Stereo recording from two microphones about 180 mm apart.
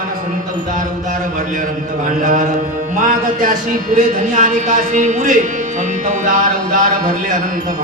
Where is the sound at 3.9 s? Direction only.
45° right (ahead or behind).